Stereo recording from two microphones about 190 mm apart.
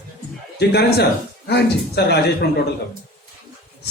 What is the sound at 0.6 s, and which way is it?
Speech, 60° left (ahead or behind).